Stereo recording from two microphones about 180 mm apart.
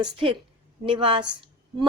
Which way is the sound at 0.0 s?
30° right (ahead or behind).